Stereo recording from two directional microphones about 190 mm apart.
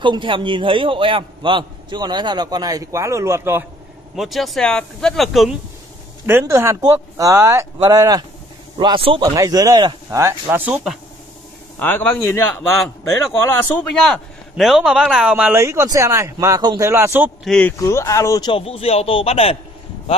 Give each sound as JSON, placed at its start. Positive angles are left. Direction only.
{"t": 0.0, "sound": "a man's voice", "side_deg": -25}
{"t": 4.2, "sound": "speech", "side_deg": 0}
{"t": 6.2, "sound": "a man's voice", "side_deg": -15}
{"t": 11.8, "sound": "a man's voice", "side_deg": 10}
{"t": 17.5, "sound": "speech", "side_deg": 10}